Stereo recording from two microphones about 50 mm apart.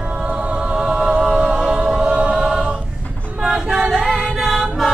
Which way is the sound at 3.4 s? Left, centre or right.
Centre.